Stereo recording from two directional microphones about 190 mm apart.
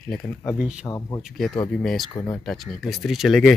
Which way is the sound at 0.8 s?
15° left (ahead or behind).